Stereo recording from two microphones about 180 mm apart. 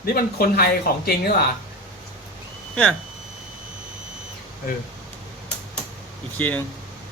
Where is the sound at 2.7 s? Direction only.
5° left (ahead or behind).